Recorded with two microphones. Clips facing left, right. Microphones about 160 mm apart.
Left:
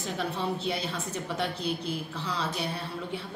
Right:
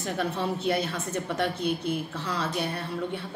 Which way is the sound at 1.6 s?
55° right (ahead or behind).